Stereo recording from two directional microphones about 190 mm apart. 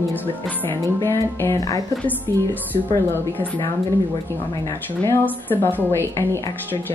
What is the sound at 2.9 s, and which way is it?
Speech, 10° left (ahead or behind).